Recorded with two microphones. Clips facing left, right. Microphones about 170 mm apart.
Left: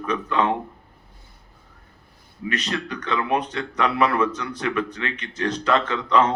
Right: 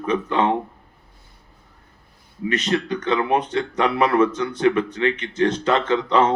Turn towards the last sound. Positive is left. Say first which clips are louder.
# right 2 dB
turn(degrees=-30)  # may be behind; listen again after turning